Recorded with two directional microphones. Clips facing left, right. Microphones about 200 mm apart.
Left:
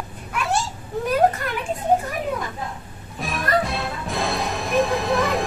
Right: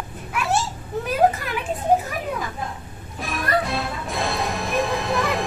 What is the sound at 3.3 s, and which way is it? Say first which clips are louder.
Music: left 1 dB; centre (ahead or behind).